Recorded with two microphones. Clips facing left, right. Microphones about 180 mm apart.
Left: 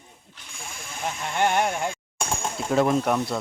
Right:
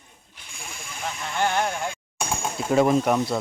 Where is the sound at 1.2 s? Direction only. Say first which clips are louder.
Left 2 dB; 20° left (ahead or behind).